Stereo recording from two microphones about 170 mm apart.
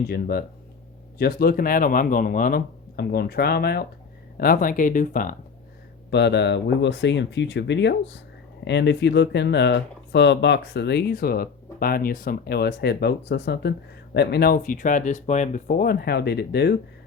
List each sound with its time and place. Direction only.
0.1 s speech: 65° left (ahead or behind)
6.1 s speech: 90° left; by 16.7 s 75° left (ahead or behind)